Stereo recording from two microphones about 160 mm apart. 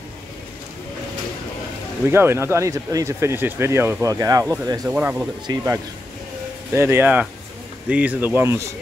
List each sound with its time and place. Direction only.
2.0 s speech: 15° right (ahead or behind)
4.8 s speech: 10° right (ahead or behind)
5.5 s speech: 25° right (ahead or behind)
6.7 s speech: 15° right (ahead or behind)